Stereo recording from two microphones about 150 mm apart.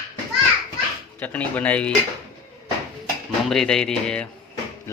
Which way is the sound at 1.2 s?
10° left (ahead or behind).